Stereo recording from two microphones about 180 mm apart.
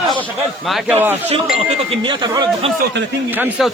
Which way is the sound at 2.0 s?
25° right (ahead or behind).